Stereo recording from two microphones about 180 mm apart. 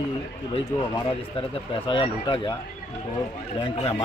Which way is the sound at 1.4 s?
30° left (ahead or behind).